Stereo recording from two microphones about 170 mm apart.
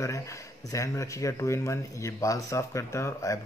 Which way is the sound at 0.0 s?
20° left (ahead or behind).